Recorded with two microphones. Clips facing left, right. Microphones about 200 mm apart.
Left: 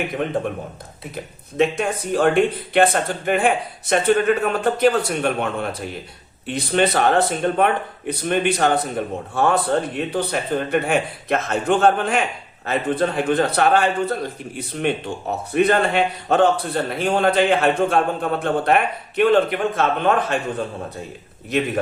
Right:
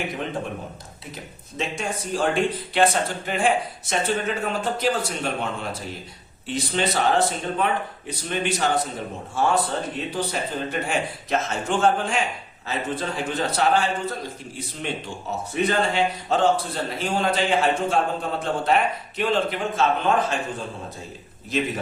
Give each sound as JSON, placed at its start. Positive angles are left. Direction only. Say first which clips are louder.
{"t": 1.1, "sound": "a man's voice", "louder": "left 10 dB", "side_deg": 60}